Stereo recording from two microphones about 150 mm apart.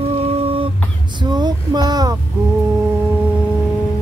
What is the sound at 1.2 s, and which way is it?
Female singing, 30° right (ahead or behind).